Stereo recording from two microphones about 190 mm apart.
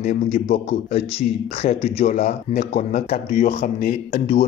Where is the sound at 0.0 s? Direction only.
35° left (ahead or behind).